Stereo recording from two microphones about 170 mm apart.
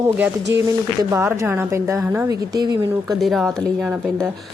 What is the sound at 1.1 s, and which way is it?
A woman's voice, 15° right (ahead or behind).